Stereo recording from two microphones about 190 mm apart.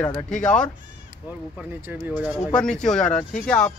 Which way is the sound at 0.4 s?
5° left (ahead or behind).